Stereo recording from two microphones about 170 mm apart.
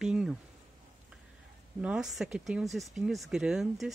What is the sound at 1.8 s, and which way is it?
Speech, 5° right (ahead or behind).